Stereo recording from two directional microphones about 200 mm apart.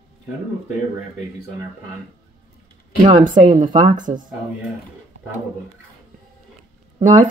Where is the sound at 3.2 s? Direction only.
40° right (ahead or behind).